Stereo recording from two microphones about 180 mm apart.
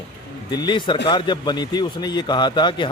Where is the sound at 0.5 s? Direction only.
25° left (ahead or behind).